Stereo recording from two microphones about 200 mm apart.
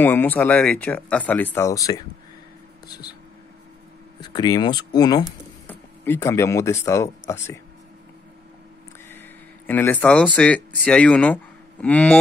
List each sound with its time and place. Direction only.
0.0 s speech: 10° left (ahead or behind)
4.2 s speech: 20° left (ahead or behind)
9.1 s speech: 10° left (ahead or behind)